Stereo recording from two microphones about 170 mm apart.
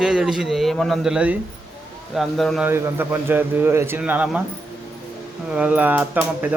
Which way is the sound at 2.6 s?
10° right (ahead or behind).